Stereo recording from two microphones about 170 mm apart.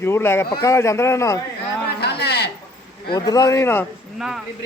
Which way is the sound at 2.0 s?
75° left (ahead or behind).